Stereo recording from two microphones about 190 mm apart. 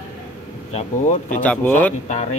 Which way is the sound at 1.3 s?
10° left (ahead or behind).